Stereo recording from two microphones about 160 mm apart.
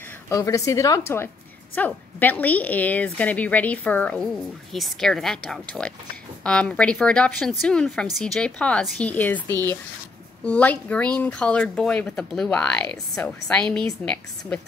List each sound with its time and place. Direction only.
0.3 s a woman's voice: 20° left (ahead or behind)